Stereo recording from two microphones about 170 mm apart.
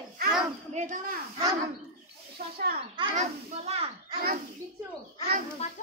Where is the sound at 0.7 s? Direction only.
50° right (ahead or behind).